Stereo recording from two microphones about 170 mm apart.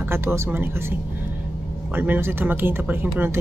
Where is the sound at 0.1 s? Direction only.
15° right (ahead or behind).